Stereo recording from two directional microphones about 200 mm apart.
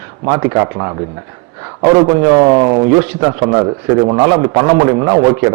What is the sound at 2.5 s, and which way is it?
A man's voice, 30° right (ahead or behind).